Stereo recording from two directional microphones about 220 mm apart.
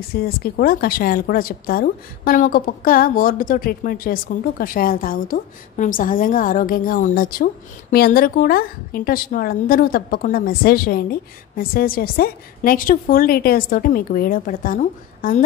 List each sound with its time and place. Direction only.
0.1 s a woman's voice: 45° left (ahead or behind)